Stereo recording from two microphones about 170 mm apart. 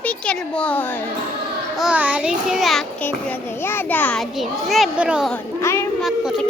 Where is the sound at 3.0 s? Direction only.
10° left (ahead or behind); by 5.3 s 5° right (ahead or behind).